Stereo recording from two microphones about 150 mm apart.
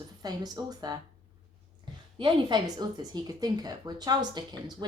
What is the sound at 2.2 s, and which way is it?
A woman's voice, 30° right (ahead or behind).